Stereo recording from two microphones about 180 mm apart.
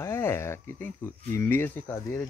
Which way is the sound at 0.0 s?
15° left (ahead or behind).